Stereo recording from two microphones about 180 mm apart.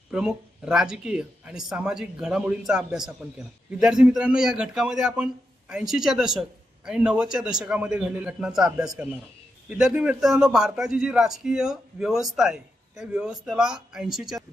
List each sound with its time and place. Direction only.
0.1 s a man's voice: 5° right (ahead or behind)